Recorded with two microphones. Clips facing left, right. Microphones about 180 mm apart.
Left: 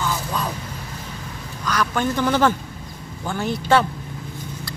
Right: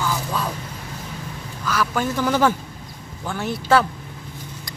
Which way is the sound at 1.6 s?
5° right (ahead or behind).